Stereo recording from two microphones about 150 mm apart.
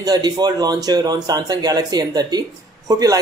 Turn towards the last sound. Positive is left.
turn(degrees=-25)  # may be behind; listen again after turning